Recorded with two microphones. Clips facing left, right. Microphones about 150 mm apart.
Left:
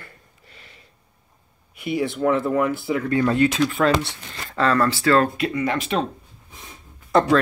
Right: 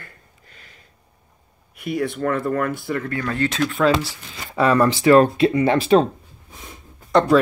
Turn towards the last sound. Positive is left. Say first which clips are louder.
# right 1 dB
turn(degrees=5)  # may be behind; listen again after turning